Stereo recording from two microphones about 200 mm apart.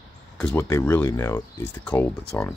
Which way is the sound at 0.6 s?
15° left (ahead or behind).